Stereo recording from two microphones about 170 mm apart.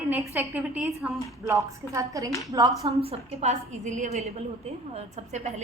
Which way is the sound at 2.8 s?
35° right (ahead or behind).